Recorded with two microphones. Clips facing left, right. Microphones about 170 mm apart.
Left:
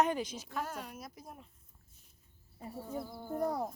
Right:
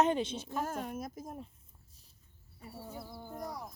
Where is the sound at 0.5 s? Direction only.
45° right (ahead or behind).